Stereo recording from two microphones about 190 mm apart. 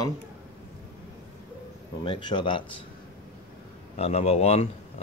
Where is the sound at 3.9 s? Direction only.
35° left (ahead or behind).